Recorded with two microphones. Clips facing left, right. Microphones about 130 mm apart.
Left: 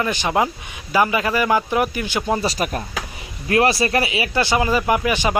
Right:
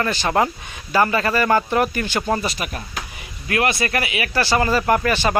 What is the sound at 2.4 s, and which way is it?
Speech, 40° left (ahead or behind).